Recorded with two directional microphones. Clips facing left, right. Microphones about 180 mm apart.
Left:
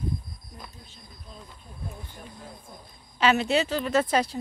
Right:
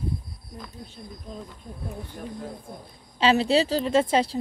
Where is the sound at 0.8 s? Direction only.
60° right (ahead or behind).